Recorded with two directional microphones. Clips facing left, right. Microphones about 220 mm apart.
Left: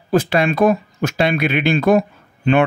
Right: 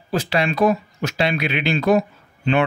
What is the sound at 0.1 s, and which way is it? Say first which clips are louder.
Speech: left 5 dB; 50° left (ahead or behind).